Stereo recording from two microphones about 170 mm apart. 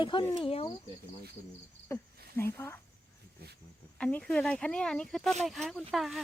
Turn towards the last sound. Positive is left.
turn(degrees=0)  # may be behind; listen again after turning